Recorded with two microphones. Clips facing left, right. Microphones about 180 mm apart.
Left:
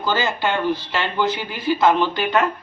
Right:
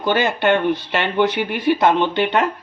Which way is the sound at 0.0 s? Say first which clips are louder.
Right 4 dB; 60° right (ahead or behind).